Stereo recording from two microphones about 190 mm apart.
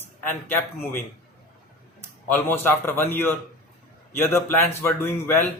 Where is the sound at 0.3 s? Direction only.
10° left (ahead or behind).